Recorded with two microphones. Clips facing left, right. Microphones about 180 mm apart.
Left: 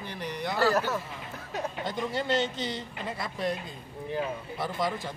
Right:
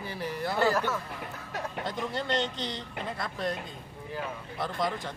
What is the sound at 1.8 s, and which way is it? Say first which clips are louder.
Speech: left 2 dB; centre (ahead or behind).